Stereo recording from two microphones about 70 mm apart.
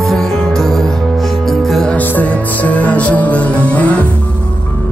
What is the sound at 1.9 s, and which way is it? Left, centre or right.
Music, left.